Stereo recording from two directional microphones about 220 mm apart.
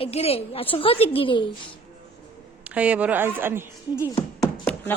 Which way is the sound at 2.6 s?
5° right (ahead or behind).